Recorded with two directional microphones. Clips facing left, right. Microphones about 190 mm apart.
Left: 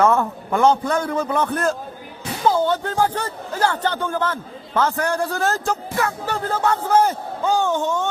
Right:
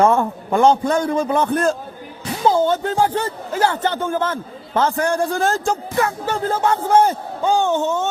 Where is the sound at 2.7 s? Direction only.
25° right (ahead or behind).